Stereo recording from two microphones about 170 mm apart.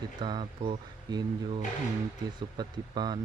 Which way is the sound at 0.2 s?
25° right (ahead or behind).